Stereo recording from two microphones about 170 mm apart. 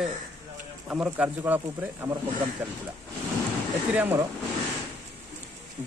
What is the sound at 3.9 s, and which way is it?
Speech, 10° right (ahead or behind).